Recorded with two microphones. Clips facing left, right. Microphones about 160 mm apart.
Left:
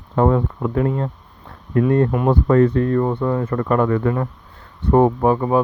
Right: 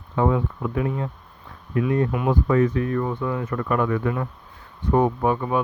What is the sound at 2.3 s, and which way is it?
Speech, 60° left (ahead or behind).